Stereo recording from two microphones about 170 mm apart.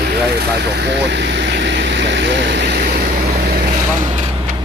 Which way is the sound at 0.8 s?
90° right.